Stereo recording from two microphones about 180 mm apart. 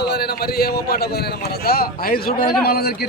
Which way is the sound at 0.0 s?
65° left (ahead or behind).